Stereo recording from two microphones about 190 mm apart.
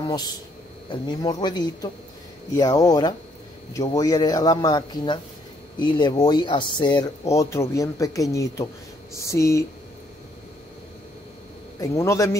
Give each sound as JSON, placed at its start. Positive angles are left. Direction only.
{"t": 0.0, "sound": "speech", "side_deg": 20}
{"t": 11.8, "sound": "speech", "side_deg": 15}